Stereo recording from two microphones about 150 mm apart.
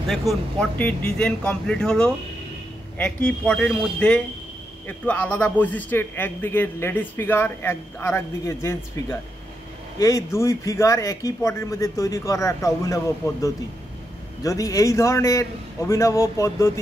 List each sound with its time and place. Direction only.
0.1 s a man's voice: centre (ahead or behind); by 8.7 s 15° left (ahead or behind)
9.9 s speech: 20° left (ahead or behind)